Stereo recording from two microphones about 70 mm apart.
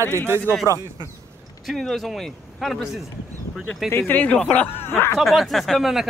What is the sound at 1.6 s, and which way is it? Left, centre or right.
Speech, centre.